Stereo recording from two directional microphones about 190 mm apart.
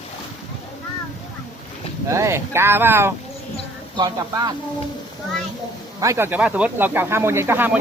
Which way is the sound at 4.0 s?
20° right (ahead or behind).